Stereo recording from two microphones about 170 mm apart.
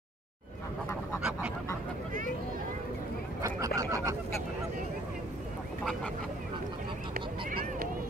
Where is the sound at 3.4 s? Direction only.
20° right (ahead or behind).